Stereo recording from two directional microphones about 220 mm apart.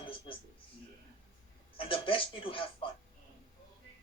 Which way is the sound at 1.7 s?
25° left (ahead or behind).